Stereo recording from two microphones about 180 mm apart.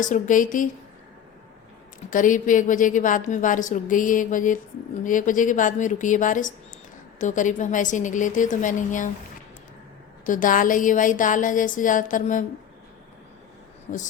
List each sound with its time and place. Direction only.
0.0 s a woman's voice: 45° left (ahead or behind)
2.0 s a woman's voice: 50° left (ahead or behind)
10.2 s a woman's voice: 45° left (ahead or behind)